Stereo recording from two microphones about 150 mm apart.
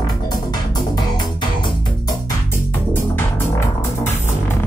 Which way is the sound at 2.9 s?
15° left (ahead or behind).